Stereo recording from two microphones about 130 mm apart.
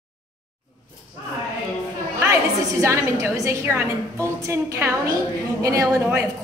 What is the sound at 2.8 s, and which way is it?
A woman's voice, 20° right (ahead or behind).